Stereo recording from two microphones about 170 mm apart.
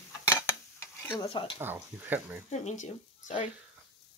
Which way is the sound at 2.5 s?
45° left (ahead or behind).